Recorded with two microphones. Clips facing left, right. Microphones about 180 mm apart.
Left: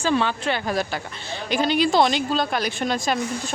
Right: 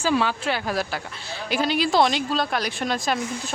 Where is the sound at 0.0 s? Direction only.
5° right (ahead or behind).